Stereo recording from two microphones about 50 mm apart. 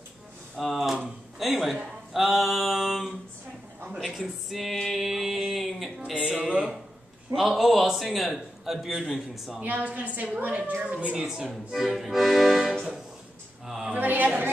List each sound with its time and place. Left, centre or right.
0.6 s a man's voice: centre
2.1 s a sound: centre
7.3 s a man's voice: centre
9.6 s a woman's voice: right
11.1 s speech: centre
13.7 s a sound: centre
13.9 s a woman's voice: right